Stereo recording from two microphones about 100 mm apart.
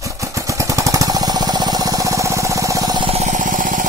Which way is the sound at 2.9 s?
65° right (ahead or behind).